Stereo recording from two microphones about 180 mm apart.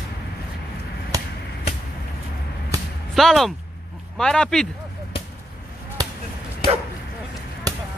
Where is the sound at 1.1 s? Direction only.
20° right (ahead or behind).